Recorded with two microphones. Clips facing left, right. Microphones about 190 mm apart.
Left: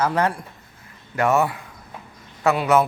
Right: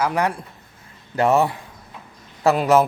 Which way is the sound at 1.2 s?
30° right (ahead or behind).